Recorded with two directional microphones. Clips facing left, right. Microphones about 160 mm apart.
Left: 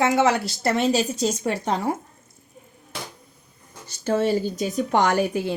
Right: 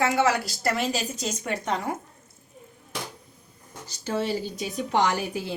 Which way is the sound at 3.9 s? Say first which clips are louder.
Left 6 dB; 50° left (ahead or behind).